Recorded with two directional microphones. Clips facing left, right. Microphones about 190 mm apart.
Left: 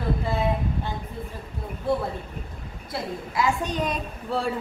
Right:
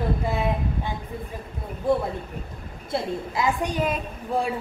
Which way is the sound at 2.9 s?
25° right (ahead or behind).